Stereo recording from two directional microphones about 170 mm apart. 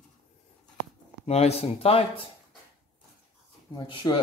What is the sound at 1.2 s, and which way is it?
Speech, 35° left (ahead or behind).